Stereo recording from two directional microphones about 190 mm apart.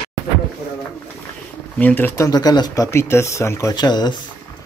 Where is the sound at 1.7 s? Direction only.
10° left (ahead or behind).